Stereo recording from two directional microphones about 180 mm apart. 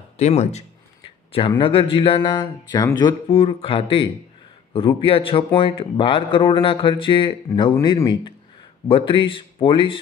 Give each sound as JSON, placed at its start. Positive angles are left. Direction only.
{"t": 0.2, "sound": "speech", "side_deg": 40}